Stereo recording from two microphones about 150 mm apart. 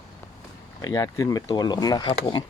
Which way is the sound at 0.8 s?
25° left (ahead or behind).